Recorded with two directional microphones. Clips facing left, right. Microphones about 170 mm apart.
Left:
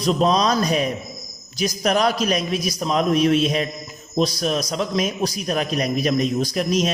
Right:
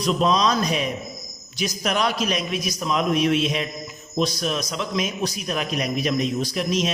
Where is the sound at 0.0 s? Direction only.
40° left (ahead or behind).